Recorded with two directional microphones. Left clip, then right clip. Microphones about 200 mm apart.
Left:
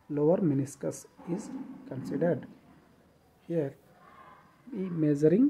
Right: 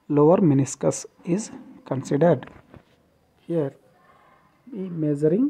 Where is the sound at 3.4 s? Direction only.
20° right (ahead or behind).